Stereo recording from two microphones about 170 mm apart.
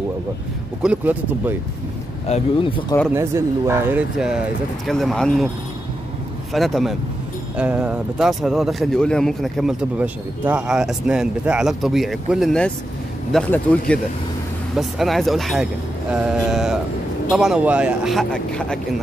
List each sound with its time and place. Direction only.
0.8 s speech: 10° right (ahead or behind)
2.2 s speech: 40° left (ahead or behind)
3.1 s speech: 15° right (ahead or behind)
4.8 s speech: centre (ahead or behind)
6.5 s speech: centre (ahead or behind)